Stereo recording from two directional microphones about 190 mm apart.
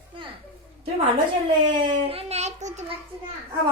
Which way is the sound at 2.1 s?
35° right (ahead or behind).